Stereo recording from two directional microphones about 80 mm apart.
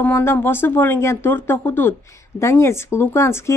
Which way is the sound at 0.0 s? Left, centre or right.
Left.